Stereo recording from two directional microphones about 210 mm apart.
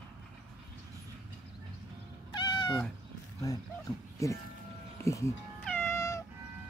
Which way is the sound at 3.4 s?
15° left (ahead or behind).